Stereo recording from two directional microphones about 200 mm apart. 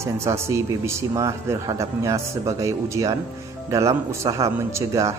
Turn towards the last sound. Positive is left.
turn(degrees=-15)  # may be behind; listen again after turning